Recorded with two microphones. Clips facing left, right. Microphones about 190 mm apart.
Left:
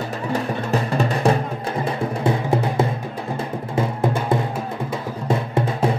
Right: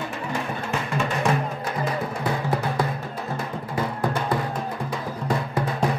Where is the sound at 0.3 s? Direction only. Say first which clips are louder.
Left 7 dB; 35° left (ahead or behind).